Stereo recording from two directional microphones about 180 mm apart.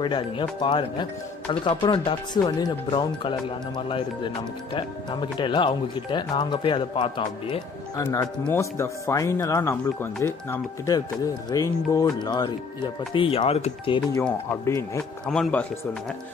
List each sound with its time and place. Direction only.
0.0 s speech: 25° left (ahead or behind)
5.4 s speech: 25° left (ahead or behind)
14.2 s speech: 15° left (ahead or behind)
15.2 s speech: 5° left (ahead or behind)